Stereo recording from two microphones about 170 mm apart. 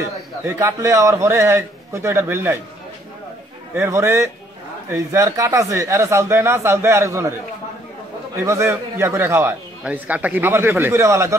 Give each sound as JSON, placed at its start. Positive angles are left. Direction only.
{"t": 0.5, "sound": "a man's voice", "side_deg": -15}
{"t": 3.7, "sound": "a man's voice", "side_deg": -15}
{"t": 8.4, "sound": "a man's voice", "side_deg": -15}